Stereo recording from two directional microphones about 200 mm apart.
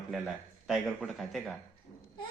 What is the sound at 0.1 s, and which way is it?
A man's voice, centre (ahead or behind).